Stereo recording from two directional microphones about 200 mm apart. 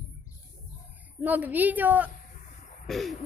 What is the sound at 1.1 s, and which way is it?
A woman's voice, 10° right (ahead or behind).